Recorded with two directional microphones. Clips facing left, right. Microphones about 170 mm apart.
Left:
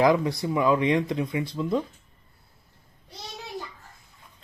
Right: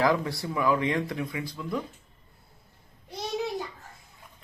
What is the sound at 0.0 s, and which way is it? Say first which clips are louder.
Speech: left 4 dB; 20° left (ahead or behind).